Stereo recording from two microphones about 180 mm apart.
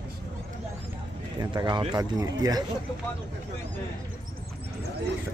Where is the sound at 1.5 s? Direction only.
25° right (ahead or behind).